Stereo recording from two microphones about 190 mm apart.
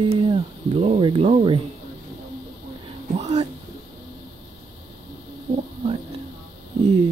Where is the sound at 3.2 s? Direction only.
35° right (ahead or behind).